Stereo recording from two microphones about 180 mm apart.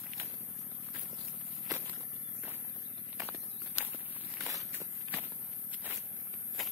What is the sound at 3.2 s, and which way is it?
Walk, 10° right (ahead or behind).